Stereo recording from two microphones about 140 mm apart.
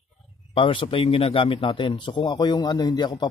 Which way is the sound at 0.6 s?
40° left (ahead or behind).